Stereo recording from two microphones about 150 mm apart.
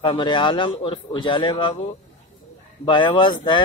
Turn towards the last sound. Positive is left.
turn(degrees=30)  # may be behind; listen again after turning